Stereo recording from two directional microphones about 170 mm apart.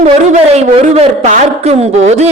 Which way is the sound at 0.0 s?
40° right (ahead or behind).